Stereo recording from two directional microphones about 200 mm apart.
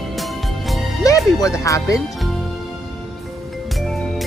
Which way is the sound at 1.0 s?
15° left (ahead or behind).